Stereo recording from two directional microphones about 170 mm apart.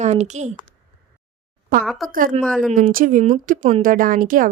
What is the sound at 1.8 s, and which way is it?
Speech, centre (ahead or behind).